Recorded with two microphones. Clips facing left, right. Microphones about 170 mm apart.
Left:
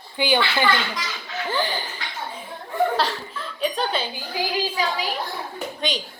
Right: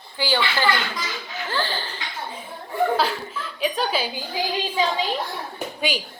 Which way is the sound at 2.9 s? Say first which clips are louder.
Right 1 dB; 5° right (ahead or behind).